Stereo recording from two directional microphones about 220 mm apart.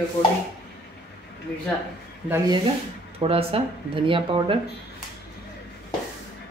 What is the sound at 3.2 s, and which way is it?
Speech, 25° right (ahead or behind).